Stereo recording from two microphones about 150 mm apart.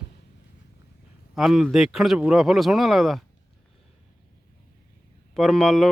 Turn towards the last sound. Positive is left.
turn(degrees=5)  # may be behind; listen again after turning